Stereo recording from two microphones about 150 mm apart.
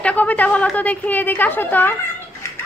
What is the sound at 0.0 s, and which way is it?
A woman's voice, 10° left (ahead or behind).